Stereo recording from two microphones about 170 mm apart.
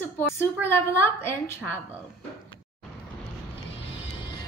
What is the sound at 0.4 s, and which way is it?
Speech, 15° left (ahead or behind).